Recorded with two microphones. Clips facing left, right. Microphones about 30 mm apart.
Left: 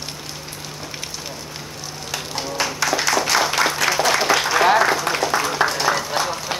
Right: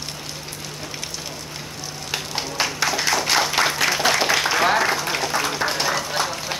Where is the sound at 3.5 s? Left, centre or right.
Centre.